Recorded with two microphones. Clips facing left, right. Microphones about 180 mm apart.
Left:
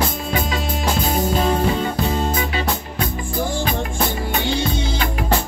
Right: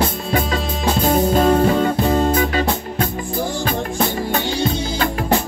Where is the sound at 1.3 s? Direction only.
45° right (ahead or behind).